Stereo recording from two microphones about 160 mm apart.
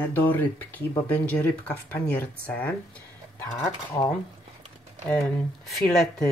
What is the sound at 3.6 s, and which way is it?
Speech, 20° left (ahead or behind).